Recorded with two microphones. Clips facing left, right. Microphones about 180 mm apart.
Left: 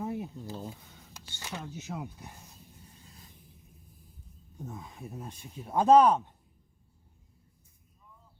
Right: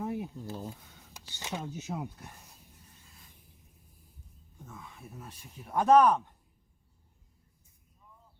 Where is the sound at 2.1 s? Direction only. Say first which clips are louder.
Left 1 dB; 10° left (ahead or behind).